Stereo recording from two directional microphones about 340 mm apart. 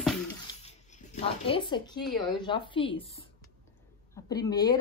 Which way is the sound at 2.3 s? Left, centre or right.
Centre.